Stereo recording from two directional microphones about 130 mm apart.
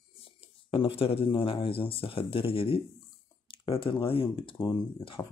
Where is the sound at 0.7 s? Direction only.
45° left (ahead or behind).